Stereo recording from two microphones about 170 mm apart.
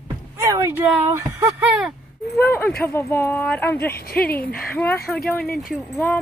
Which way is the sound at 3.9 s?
65° left (ahead or behind).